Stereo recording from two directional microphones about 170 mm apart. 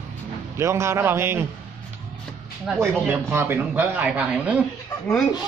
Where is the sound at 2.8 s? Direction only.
15° right (ahead or behind).